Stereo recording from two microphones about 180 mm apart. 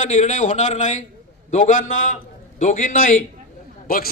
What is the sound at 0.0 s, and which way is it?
A man's voice, 40° left (ahead or behind).